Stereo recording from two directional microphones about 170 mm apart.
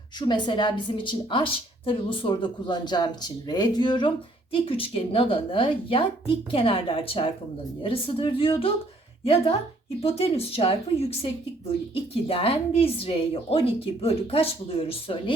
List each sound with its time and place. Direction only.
0.2 s a woman's voice: 25° left (ahead or behind)